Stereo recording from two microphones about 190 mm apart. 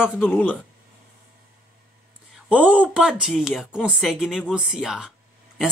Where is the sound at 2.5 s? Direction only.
10° right (ahead or behind).